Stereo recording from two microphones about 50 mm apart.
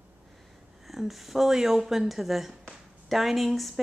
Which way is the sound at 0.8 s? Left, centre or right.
Centre.